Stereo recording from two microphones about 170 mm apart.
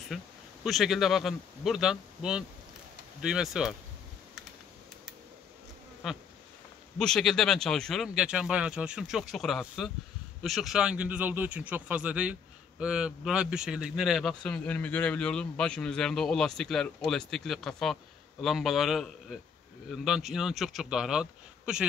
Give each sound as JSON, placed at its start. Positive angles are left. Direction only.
{"t": 0.1, "sound": "a man's voice", "side_deg": 0}
{"t": 6.0, "sound": "a man's voice", "side_deg": 0}